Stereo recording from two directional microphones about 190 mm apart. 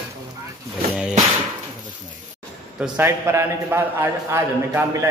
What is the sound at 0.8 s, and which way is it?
Music, 50° right (ahead or behind).